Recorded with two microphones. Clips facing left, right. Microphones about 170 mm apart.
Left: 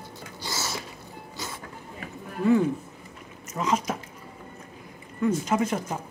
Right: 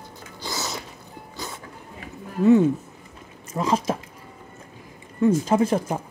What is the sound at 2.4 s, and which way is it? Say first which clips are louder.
Speech: right 5 dB; 25° right (ahead or behind).